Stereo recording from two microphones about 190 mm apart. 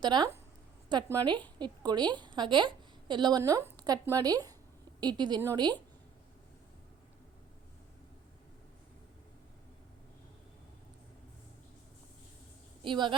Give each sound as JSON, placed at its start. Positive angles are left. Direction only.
{"t": 0.0, "sound": "a woman's voice", "side_deg": -25}
{"t": 12.8, "sound": "a woman's voice", "side_deg": -25}